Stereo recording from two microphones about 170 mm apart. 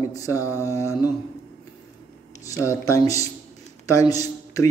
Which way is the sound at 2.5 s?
20° left (ahead or behind).